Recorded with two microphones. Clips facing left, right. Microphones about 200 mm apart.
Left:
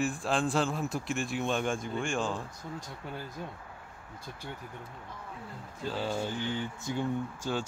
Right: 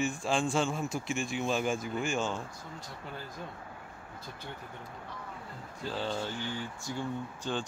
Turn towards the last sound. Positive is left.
turn(degrees=20)  # may be behind; listen again after turning